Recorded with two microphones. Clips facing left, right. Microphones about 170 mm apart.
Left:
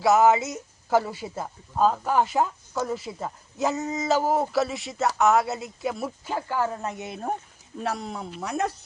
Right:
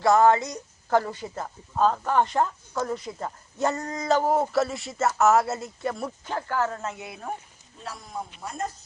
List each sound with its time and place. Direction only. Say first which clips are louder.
0.0 s speech: even; 5° left (ahead or behind); by 7.3 s 20° left (ahead or behind)
7.8 s speech: left 6 dB; 70° left (ahead or behind)